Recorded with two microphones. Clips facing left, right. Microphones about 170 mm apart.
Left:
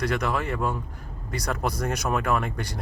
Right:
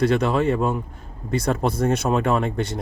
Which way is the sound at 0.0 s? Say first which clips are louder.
Right 7 dB; 25° right (ahead or behind).